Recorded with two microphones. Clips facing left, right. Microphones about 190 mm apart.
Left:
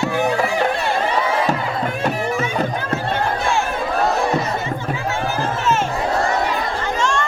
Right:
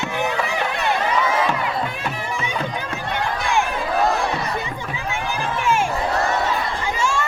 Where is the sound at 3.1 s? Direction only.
15° right (ahead or behind).